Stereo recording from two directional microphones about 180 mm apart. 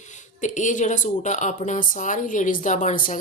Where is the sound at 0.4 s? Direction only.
45° left (ahead or behind).